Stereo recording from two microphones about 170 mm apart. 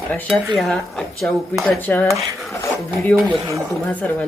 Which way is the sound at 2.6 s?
15° left (ahead or behind).